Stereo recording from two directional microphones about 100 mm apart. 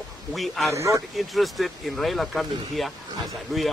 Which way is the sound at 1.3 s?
Centre (ahead or behind).